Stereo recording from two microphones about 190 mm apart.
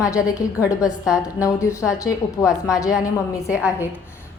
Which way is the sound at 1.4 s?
15° left (ahead or behind).